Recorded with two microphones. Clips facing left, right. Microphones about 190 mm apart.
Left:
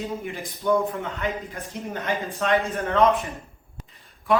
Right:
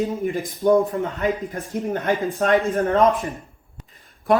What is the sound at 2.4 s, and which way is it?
Speech, 45° right (ahead or behind).